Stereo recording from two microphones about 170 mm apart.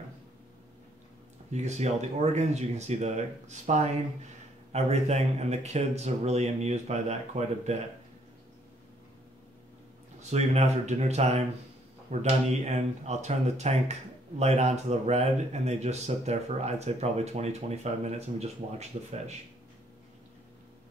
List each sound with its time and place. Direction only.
1.5 s speech: 40° right (ahead or behind)
10.3 s speech: 40° right (ahead or behind)